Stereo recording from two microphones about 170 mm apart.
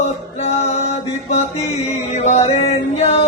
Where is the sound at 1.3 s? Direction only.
40° left (ahead or behind).